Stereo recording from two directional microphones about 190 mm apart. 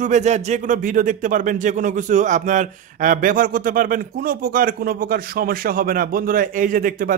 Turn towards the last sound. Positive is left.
turn(degrees=-45)  # may be behind; listen again after turning